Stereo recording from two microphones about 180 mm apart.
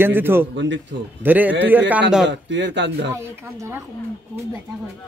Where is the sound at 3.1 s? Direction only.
15° right (ahead or behind).